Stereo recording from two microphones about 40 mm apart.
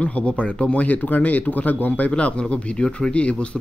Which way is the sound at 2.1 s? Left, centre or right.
Left.